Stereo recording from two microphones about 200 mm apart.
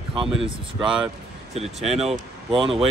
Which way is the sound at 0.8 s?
5° right (ahead or behind).